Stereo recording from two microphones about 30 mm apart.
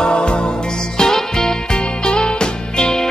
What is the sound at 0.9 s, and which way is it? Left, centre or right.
Music, centre.